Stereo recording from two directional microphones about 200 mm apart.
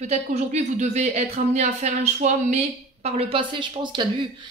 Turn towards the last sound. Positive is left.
turn(degrees=-25)  # may be behind; listen again after turning